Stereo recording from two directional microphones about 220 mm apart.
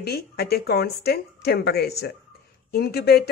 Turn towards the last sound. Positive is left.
turn(degrees=45)  # may be behind; listen again after turning